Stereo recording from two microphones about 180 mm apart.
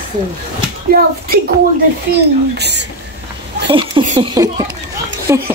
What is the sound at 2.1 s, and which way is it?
Speech, 70° right (ahead or behind).